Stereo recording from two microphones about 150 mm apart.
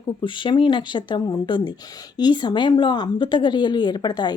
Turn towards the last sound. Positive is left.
turn(degrees=30)  # may be behind; listen again after turning